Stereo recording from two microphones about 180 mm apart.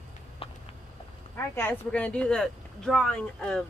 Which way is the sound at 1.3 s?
15° left (ahead or behind).